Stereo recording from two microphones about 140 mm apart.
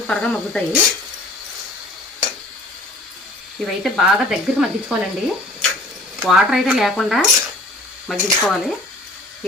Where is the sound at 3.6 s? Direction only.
Centre (ahead or behind).